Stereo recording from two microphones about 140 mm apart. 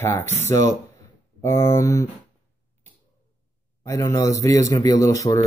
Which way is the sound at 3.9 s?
20° left (ahead or behind).